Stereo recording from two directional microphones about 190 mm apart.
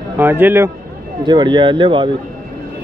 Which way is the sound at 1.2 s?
25° right (ahead or behind).